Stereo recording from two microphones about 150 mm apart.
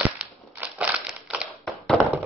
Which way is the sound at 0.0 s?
10° right (ahead or behind).